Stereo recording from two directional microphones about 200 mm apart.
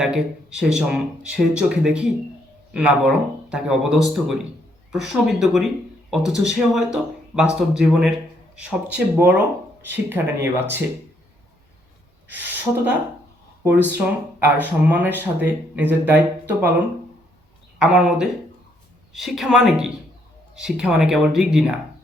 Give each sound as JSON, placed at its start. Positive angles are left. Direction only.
{"t": 0.6, "sound": "speech", "side_deg": -5}
{"t": 12.3, "sound": "speech", "side_deg": -10}
{"t": 17.7, "sound": "speech", "side_deg": -5}